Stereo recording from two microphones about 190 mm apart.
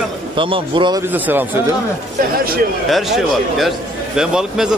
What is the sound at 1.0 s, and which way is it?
Speech, 10° right (ahead or behind).